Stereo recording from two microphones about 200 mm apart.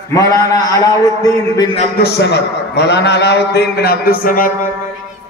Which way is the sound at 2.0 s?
55° left (ahead or behind).